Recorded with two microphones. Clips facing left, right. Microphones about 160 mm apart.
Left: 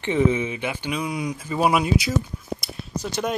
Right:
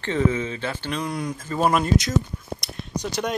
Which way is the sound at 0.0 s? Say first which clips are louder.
Left 2 dB; 15° left (ahead or behind).